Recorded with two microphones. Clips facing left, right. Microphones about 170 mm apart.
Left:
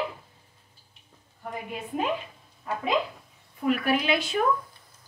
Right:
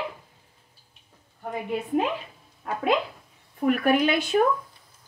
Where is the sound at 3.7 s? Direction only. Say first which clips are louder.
Right 3 dB; 50° right (ahead or behind).